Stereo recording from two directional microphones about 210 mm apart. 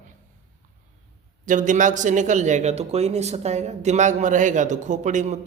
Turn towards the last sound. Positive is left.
turn(degrees=-35)  # may be behind; listen again after turning